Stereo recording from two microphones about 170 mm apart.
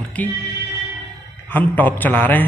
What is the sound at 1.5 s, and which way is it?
A man's voice, 10° left (ahead or behind).